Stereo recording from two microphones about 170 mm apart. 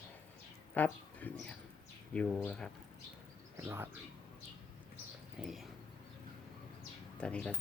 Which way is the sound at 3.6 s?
15° right (ahead or behind).